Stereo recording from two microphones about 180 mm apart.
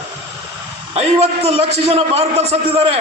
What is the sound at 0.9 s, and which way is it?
A man's voice, 35° right (ahead or behind).